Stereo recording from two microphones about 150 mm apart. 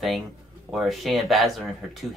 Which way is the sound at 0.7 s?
Centre (ahead or behind).